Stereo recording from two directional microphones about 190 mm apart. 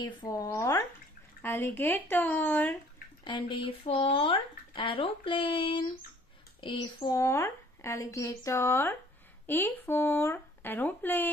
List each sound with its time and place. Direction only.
0.0 s speech: 20° left (ahead or behind)
3.3 s speech: 25° left (ahead or behind); by 11.2 s 10° left (ahead or behind)